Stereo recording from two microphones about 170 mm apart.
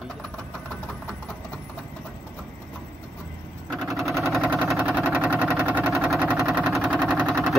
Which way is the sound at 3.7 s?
Centre (ahead or behind).